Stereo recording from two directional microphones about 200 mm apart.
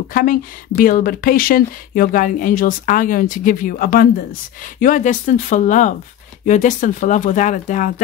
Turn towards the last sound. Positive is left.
turn(degrees=40)  # may be behind; listen again after turning